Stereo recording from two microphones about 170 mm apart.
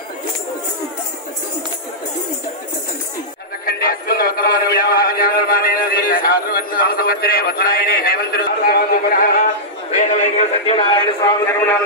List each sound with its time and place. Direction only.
3.6 s music: 60° left (ahead or behind)
9.8 s speech: 45° left (ahead or behind)
10.9 s a man's voice: 25° left (ahead or behind)